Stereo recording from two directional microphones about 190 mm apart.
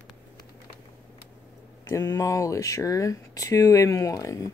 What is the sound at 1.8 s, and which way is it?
Speech, 15° left (ahead or behind).